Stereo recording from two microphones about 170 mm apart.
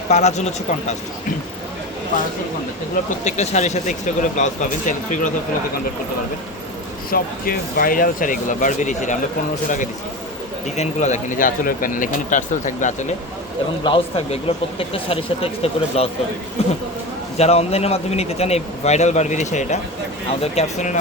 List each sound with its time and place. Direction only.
0.1 s speech: 40° left (ahead or behind)
3.2 s speech: 40° left (ahead or behind)
7.1 s speech: 60° left (ahead or behind)
10.8 s speech: 45° left (ahead or behind)
13.8 s speech: 30° left (ahead or behind)